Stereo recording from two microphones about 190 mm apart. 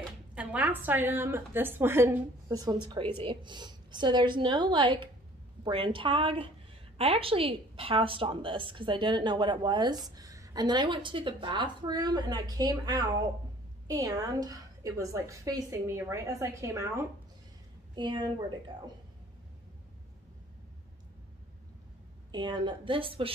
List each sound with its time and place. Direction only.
0.3 s a woman's voice: 5° right (ahead or behind); by 18.6 s 25° right (ahead or behind)
22.3 s a woman's voice: 25° right (ahead or behind)